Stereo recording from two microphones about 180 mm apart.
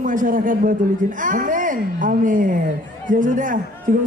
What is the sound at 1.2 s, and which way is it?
A woman's voice, 50° right (ahead or behind).